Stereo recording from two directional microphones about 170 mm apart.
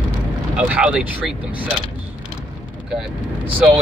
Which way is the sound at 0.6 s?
5° right (ahead or behind).